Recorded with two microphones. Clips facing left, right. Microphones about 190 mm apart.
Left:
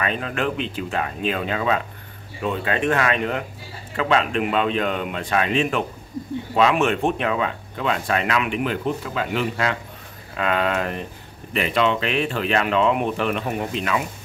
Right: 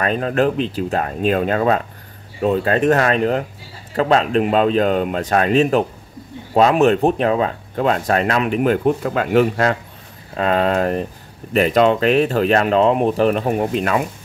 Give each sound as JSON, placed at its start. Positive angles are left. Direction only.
{"t": 0.0, "sound": "speech", "side_deg": -40}
{"t": 10.3, "sound": "speech", "side_deg": -35}